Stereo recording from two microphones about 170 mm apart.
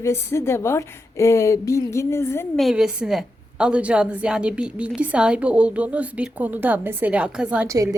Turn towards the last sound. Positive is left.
turn(degrees=-20)  # may be behind; listen again after turning